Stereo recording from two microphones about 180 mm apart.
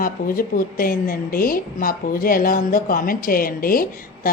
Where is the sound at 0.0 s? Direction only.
50° left (ahead or behind).